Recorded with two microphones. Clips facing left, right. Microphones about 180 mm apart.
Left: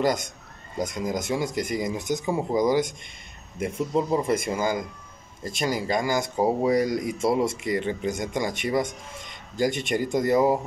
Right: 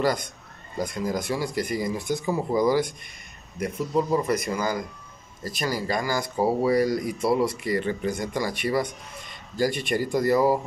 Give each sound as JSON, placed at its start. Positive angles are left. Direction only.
{"t": 0.7, "sound": "speech", "side_deg": 20}